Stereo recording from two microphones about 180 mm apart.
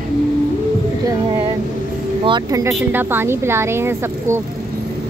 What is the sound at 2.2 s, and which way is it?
Speech, 25° right (ahead or behind).